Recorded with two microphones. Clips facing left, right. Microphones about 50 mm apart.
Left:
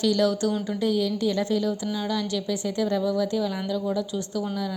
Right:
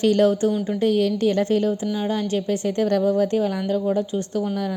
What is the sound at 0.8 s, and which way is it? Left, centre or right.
A woman's voice, right.